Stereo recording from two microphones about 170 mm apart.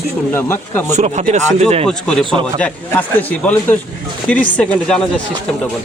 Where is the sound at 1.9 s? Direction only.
5° left (ahead or behind).